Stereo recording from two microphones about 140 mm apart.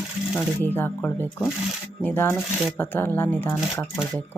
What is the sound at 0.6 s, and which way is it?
Speech, 15° left (ahead or behind).